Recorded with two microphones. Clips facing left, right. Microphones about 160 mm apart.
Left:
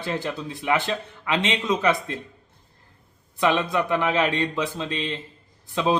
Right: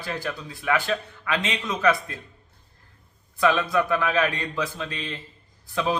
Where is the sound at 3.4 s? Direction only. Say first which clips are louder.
Even; 25° left (ahead or behind).